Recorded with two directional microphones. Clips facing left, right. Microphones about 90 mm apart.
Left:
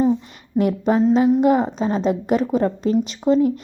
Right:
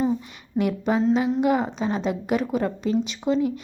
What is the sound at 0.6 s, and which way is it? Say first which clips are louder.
Speech: left 5 dB; 40° left (ahead or behind).